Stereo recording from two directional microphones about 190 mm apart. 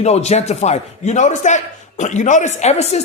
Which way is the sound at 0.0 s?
35° left (ahead or behind).